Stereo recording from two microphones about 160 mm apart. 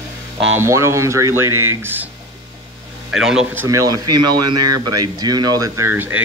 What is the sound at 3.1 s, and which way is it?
Speech, 5° right (ahead or behind).